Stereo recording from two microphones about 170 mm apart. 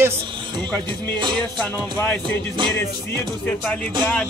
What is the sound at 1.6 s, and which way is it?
Speech, 10° left (ahead or behind).